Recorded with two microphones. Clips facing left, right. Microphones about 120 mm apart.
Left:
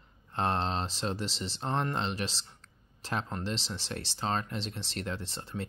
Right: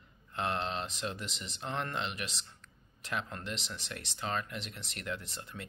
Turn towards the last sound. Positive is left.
turn(degrees=30)  # may be behind; listen again after turning